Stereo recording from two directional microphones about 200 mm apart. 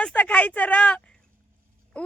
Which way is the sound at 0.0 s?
5° left (ahead or behind).